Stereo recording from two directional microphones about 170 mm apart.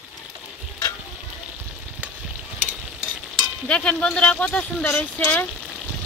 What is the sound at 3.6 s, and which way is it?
Speech, 5° left (ahead or behind).